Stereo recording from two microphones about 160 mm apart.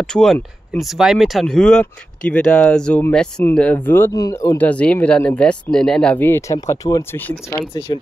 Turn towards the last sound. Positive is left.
turn(degrees=20)  # may be behind; listen again after turning